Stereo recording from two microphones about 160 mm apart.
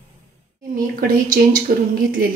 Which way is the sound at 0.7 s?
60° right (ahead or behind).